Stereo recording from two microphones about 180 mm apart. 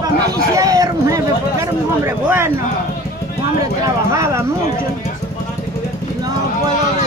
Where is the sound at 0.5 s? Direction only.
20° right (ahead or behind).